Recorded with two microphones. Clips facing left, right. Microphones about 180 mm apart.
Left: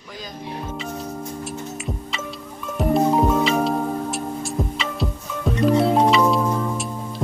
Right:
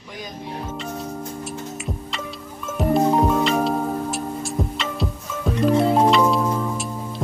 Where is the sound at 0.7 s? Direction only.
Centre (ahead or behind).